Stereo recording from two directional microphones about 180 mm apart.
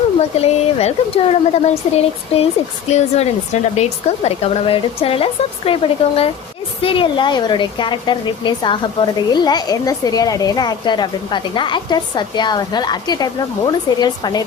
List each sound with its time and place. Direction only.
0.4 s a woman's voice: 35° left (ahead or behind)